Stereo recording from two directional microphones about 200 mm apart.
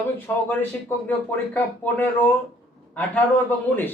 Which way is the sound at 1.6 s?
10° left (ahead or behind).